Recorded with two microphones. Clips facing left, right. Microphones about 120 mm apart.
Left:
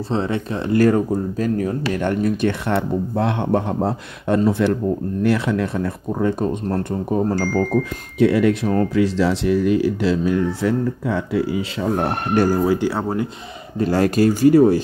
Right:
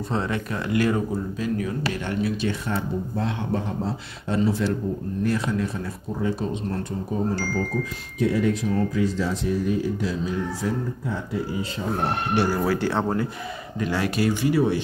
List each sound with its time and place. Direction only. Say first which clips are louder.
0.1 s speech: left 5 dB; 30° left (ahead or behind)
0.7 s speech: left 7 dB; 45° left (ahead or behind); by 4.7 s 60° left (ahead or behind)
5.2 s speech: left 5 dB; 70° left (ahead or behind); by 7.8 s 50° left (ahead or behind)
8.2 s speech: left 6 dB; 80° left
12.6 s speech: left 4 dB; 15° left (ahead or behind)
13.7 s speech: left 8 dB; 40° left (ahead or behind)